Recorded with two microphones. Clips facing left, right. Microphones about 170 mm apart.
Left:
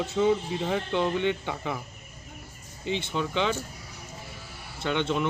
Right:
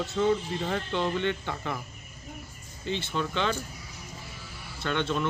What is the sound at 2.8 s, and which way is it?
Speech, 15° left (ahead or behind).